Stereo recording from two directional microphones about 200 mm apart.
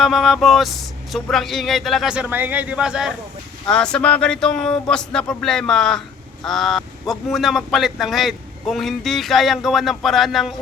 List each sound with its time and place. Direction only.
0.0 s a man's voice: centre (ahead or behind)